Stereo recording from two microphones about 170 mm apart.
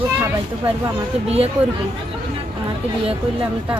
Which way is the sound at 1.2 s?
35° right (ahead or behind).